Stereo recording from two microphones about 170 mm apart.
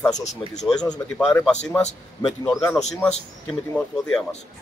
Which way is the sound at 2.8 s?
5° left (ahead or behind).